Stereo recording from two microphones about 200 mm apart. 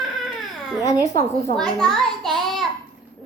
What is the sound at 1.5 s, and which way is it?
Speech, 5° left (ahead or behind).